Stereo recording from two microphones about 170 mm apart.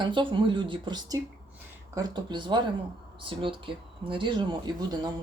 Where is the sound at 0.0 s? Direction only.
30° right (ahead or behind).